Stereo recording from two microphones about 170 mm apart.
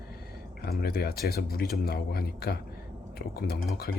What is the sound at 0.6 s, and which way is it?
A man's voice, 65° left (ahead or behind).